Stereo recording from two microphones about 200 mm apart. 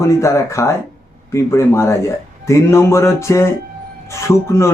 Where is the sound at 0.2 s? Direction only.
15° left (ahead or behind).